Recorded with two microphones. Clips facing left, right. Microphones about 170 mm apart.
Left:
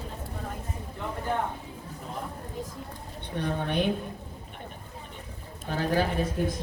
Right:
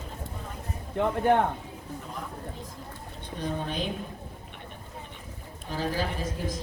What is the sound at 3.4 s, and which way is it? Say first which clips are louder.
Speech: left 4 dB; 65° left (ahead or behind).